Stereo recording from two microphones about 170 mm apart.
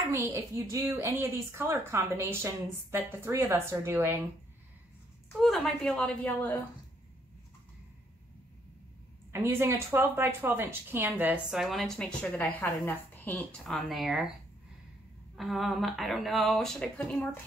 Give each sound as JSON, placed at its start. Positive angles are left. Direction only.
{"t": 0.1, "sound": "a woman's voice", "side_deg": -15}
{"t": 5.4, "sound": "speech", "side_deg": 0}
{"t": 9.3, "sound": "speech", "side_deg": -15}
{"t": 15.3, "sound": "speech", "side_deg": 0}